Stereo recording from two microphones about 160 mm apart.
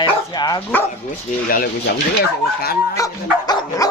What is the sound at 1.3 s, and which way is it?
Speech, 50° left (ahead or behind).